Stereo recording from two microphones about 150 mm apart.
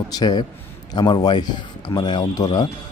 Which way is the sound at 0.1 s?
25° left (ahead or behind).